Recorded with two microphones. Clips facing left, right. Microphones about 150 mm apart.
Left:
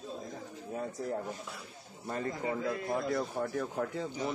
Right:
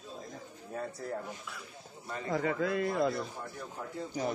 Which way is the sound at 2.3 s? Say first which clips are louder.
Right 5 dB; 80° right.